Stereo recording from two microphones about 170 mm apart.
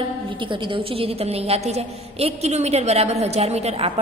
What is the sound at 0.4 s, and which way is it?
A woman's voice, 30° right (ahead or behind).